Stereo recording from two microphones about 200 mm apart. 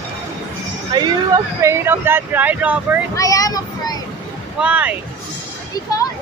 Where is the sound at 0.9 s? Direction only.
20° right (ahead or behind).